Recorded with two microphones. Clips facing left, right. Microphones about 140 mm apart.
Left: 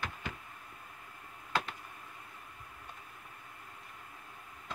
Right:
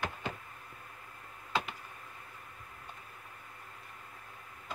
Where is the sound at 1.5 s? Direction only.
Centre (ahead or behind).